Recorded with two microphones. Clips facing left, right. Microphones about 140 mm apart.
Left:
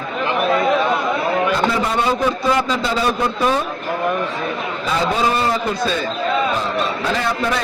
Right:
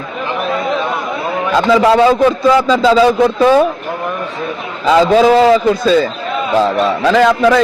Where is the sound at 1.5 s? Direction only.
90° right.